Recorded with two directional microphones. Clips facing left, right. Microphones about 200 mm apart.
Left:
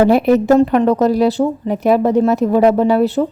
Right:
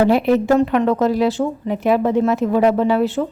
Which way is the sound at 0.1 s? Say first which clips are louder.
Left 3 dB; 40° left (ahead or behind).